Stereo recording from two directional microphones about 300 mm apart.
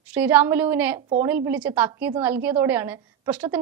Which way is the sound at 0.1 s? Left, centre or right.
Centre.